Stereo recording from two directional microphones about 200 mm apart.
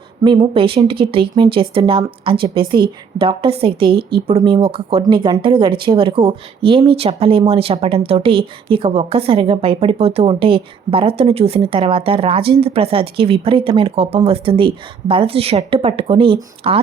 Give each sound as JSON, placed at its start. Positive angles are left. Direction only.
{"t": 0.3, "sound": "speech", "side_deg": -25}